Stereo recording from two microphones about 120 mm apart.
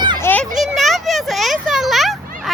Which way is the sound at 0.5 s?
Centre (ahead or behind).